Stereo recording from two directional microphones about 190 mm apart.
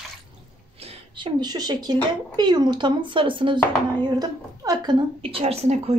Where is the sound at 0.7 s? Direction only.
30° right (ahead or behind).